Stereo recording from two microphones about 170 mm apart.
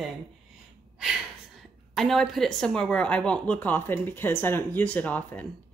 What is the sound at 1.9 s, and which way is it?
A woman's voice, centre (ahead or behind).